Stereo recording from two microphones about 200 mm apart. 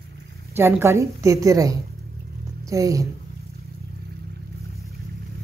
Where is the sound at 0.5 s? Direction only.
10° right (ahead or behind).